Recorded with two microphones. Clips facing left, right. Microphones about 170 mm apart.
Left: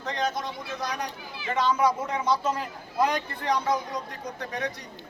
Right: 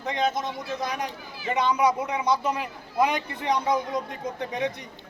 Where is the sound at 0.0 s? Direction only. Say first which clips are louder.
Right 3 dB; 20° right (ahead or behind).